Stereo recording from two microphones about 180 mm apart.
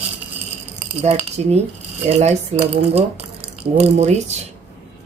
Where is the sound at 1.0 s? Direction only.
35° right (ahead or behind).